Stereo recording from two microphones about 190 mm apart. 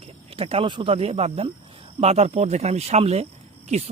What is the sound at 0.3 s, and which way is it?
Speech, 30° right (ahead or behind).